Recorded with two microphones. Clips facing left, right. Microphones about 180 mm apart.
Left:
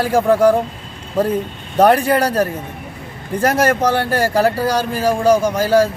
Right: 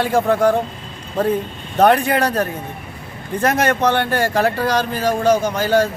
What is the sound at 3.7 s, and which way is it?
A man's voice, 10° left (ahead or behind).